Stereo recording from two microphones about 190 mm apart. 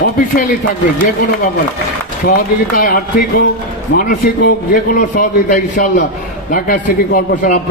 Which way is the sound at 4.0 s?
45° left (ahead or behind).